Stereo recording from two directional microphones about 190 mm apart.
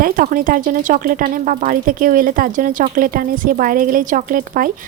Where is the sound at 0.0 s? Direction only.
50° right (ahead or behind).